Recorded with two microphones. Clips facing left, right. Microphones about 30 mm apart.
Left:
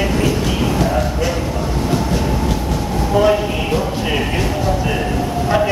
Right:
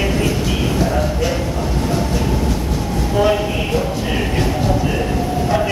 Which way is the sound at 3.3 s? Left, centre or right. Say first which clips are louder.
Left 1 dB; centre.